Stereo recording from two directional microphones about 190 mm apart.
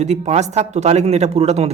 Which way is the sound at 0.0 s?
35° right (ahead or behind).